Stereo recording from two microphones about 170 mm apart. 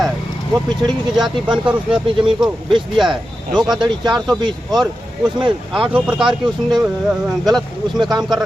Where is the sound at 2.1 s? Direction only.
30° right (ahead or behind).